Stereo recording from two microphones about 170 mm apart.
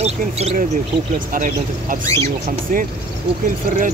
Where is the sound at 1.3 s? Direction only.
55° right (ahead or behind).